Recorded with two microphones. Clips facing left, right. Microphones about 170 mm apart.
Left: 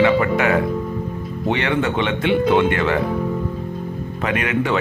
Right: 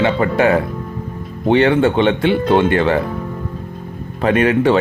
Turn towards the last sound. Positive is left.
turn(degrees=-35)  # may be behind; listen again after turning